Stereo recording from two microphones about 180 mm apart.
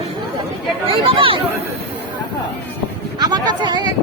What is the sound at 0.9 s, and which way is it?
Speech, 30° right (ahead or behind).